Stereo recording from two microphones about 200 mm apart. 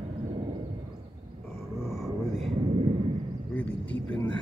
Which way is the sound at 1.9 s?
Centre (ahead or behind).